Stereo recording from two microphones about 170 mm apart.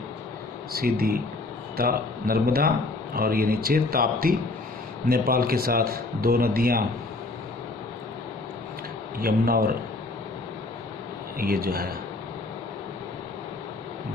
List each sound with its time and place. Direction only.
0.7 s a man's voice: 65° right (ahead or behind)
9.2 s a man's voice: 60° right (ahead or behind)
11.3 s a man's voice: 60° right (ahead or behind)